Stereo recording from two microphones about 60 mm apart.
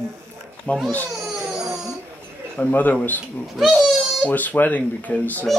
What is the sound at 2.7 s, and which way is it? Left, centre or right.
Speech, left.